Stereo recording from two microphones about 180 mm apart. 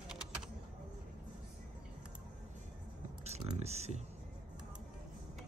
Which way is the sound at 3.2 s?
35° right (ahead or behind).